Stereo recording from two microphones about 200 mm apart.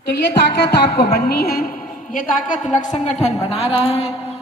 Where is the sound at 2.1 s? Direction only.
40° left (ahead or behind).